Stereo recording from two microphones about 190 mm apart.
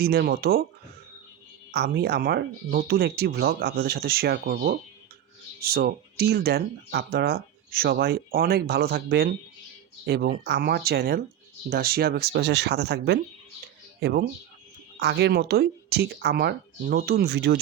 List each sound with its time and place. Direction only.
0.0 s speech: 55° right (ahead or behind)
1.7 s speech: 60° right (ahead or behind)